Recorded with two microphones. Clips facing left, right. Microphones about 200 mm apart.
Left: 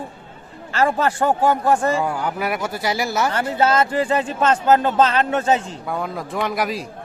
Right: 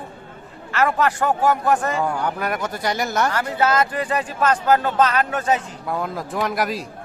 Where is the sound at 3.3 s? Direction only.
25° left (ahead or behind).